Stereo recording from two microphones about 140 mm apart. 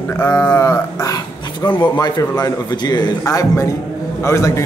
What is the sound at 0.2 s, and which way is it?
Speech, 15° left (ahead or behind).